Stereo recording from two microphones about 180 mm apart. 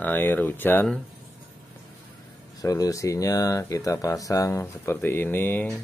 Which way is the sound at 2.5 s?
20° left (ahead or behind).